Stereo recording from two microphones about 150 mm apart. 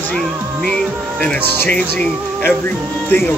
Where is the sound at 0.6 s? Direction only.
5° left (ahead or behind).